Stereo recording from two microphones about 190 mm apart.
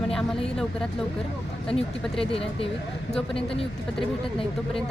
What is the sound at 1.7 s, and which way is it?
Speech, centre (ahead or behind).